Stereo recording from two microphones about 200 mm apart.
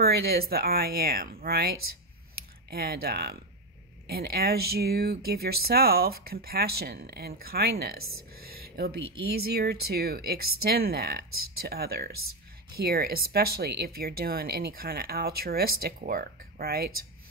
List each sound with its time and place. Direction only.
0.0 s speech: 50° right (ahead or behind)
2.7 s speech: 50° right (ahead or behind)
8.4 s a sound: 50° right (ahead or behind)
9.3 s speech: 50° right (ahead or behind)